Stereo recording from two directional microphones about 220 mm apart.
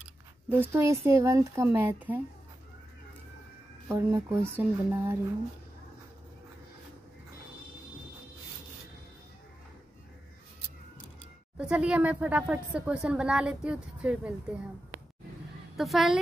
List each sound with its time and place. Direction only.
0.5 s speech: 10° right (ahead or behind)
3.9 s speech: 10° right (ahead or behind)
11.5 s speech: 5° right (ahead or behind)
15.8 s speech: centre (ahead or behind)